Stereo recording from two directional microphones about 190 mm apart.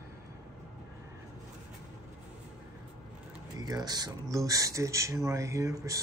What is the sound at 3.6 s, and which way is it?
Speech, 20° right (ahead or behind).